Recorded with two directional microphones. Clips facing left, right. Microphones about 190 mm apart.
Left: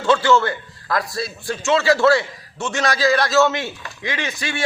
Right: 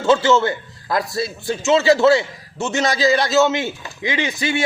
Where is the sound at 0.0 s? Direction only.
25° right (ahead or behind).